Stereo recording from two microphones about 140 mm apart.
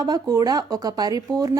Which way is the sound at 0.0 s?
25° right (ahead or behind).